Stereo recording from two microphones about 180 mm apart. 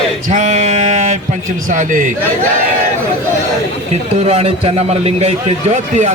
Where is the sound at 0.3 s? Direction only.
40° right (ahead or behind).